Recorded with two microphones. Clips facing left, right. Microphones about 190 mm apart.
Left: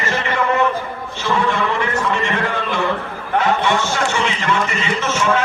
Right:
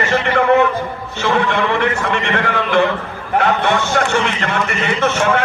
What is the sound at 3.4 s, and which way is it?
A man's voice, 60° right (ahead or behind).